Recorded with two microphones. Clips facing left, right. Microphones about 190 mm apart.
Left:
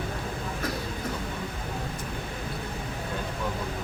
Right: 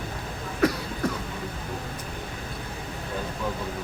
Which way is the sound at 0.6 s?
70° right (ahead or behind).